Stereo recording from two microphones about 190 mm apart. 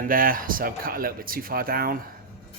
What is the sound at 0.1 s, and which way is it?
Speech, 50° right (ahead or behind).